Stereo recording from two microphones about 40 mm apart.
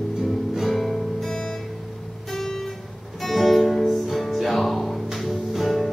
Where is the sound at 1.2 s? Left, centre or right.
Centre.